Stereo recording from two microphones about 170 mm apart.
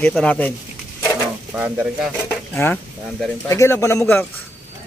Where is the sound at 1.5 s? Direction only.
10° right (ahead or behind).